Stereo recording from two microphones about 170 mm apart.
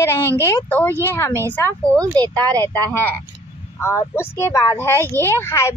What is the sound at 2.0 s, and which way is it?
Speech, 20° right (ahead or behind).